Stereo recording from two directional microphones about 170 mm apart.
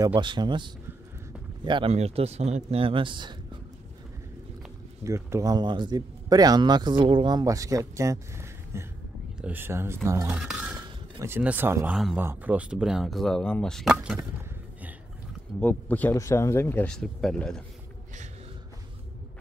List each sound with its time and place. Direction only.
0.0 s speech: 30° right (ahead or behind)
5.0 s speech: 20° right (ahead or behind)
15.6 s speech: 10° left (ahead or behind)